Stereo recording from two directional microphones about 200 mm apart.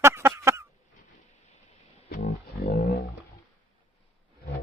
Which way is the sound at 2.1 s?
50° left (ahead or behind).